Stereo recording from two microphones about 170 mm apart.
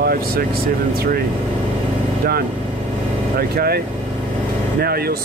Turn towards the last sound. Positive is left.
turn(degrees=-65)  # may be behind; listen again after turning